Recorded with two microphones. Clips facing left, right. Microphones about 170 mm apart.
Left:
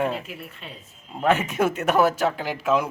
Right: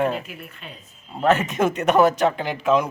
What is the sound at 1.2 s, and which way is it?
A man's voice, 10° left (ahead or behind).